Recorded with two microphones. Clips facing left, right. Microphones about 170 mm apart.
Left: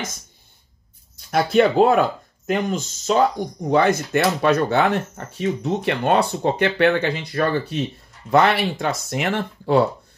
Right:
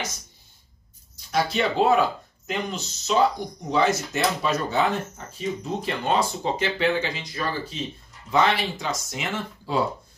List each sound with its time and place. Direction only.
1.3 s speech: 55° left (ahead or behind)